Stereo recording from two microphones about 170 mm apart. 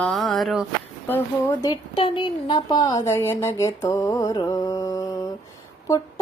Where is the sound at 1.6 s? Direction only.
30° left (ahead or behind).